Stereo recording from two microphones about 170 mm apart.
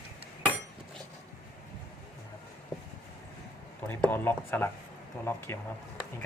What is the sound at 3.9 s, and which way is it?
Speech, 10° left (ahead or behind).